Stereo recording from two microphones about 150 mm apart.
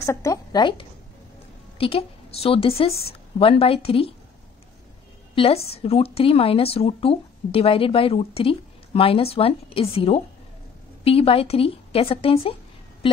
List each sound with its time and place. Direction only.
0.0 s a woman's voice: 20° left (ahead or behind); by 4.1 s 40° left (ahead or behind)
5.3 s a woman's voice: 40° left (ahead or behind)